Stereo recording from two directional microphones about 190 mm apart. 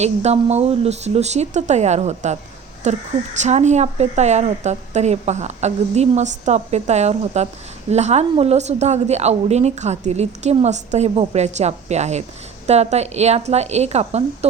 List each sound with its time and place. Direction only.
0.0 s a woman's voice: 35° right (ahead or behind)